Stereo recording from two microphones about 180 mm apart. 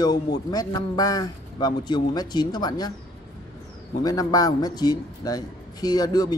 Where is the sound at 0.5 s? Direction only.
20° left (ahead or behind).